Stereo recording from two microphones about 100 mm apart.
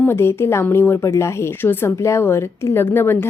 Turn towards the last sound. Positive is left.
turn(degrees=25)  # may be behind; listen again after turning